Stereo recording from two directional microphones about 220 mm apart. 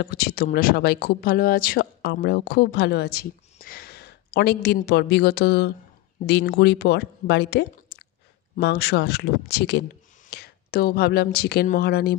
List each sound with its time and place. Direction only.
0.0 s speech: 45° left (ahead or behind)